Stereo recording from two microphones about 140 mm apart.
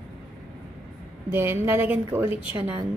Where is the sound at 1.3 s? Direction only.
15° right (ahead or behind).